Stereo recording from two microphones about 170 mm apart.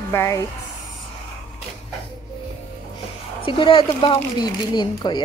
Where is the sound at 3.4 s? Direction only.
30° left (ahead or behind).